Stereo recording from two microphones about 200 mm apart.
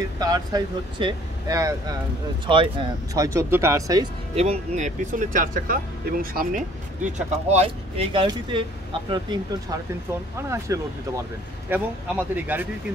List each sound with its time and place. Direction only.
0.2 s speech: 20° right (ahead or behind)
4.4 s speech: 35° right (ahead or behind)
10.7 s speech: 15° right (ahead or behind)